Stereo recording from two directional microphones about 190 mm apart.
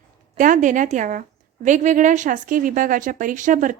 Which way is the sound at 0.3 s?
45° right (ahead or behind).